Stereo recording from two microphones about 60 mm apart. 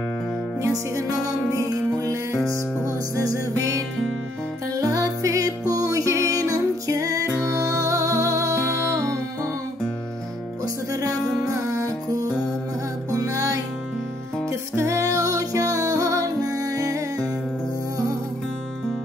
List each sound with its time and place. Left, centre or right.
0.6 s music: right
3.3 s music: right
10.9 s music: right
12.1 s music: right
13.1 s music: right
14.5 s music: right